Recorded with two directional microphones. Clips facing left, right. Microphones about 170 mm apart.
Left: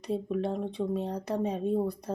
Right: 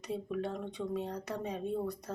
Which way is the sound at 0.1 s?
30° left (ahead or behind).